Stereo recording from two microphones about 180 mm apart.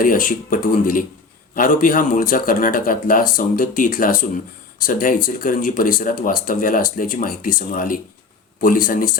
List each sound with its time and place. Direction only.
0.0 s speech: 50° left (ahead or behind)